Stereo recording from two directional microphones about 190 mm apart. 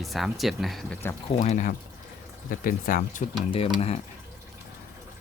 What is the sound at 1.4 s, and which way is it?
Speech, 40° left (ahead or behind).